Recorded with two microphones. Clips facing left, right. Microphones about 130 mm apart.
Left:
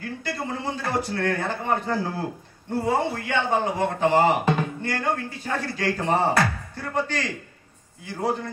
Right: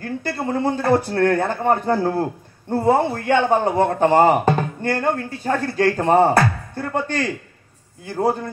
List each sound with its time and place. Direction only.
0.0 s a man's voice: 55° right (ahead or behind)